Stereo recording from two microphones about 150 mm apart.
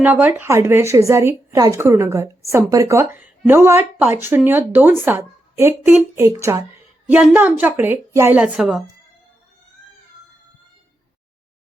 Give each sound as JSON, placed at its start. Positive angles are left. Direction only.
{"t": 0.0, "sound": "a woman's voice", "side_deg": -10}